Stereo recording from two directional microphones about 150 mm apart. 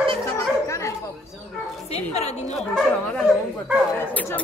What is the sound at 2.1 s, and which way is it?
Speech, 45° left (ahead or behind).